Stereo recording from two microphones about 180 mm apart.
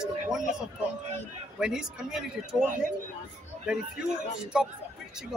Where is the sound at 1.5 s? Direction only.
5° right (ahead or behind).